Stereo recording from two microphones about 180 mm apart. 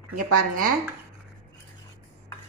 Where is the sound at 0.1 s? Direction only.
50° right (ahead or behind).